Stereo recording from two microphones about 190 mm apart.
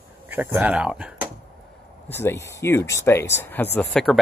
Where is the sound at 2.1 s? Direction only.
10° left (ahead or behind).